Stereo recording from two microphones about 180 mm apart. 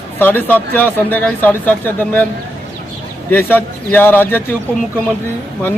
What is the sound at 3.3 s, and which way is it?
Speech, 10° left (ahead or behind).